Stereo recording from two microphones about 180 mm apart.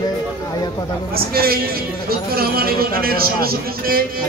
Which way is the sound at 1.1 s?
55° right (ahead or behind).